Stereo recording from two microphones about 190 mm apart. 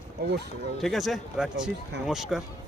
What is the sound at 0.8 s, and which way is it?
Speech, centre (ahead or behind).